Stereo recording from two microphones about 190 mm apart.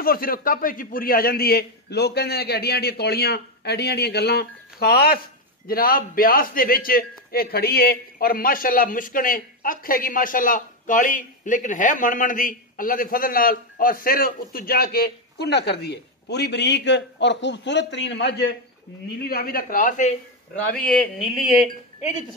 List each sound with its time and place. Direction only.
0.0 s a man's voice: 50° left (ahead or behind)
19.2 s a man's voice: 50° left (ahead or behind)